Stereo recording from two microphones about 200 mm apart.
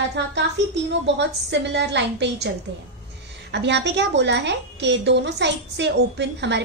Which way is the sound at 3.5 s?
60° right (ahead or behind).